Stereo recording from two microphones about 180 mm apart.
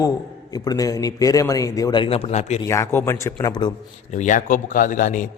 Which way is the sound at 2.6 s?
15° left (ahead or behind).